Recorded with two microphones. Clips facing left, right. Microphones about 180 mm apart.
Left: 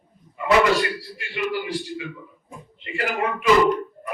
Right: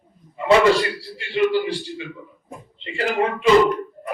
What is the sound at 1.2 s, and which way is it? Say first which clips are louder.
A man's voice: right 9 dB; 30° right (ahead or behind).